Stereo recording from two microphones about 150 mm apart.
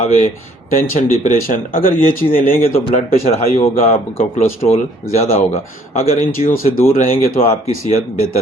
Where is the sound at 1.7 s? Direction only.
70° left (ahead or behind).